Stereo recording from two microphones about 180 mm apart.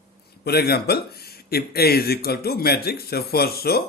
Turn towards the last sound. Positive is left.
turn(degrees=60)  # may be behind; listen again after turning